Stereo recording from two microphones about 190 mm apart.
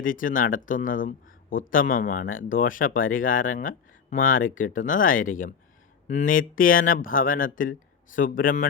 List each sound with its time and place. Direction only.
0.0 s speech: 45° left (ahead or behind)